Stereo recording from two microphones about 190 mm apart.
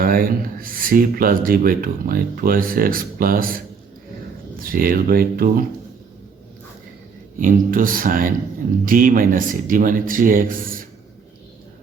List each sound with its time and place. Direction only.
0.0 s speech: 50° right (ahead or behind)
4.6 s speech: 50° right (ahead or behind)
7.3 s speech: 45° right (ahead or behind)